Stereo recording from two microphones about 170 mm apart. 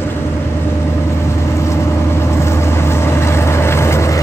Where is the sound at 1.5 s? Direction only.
15° left (ahead or behind).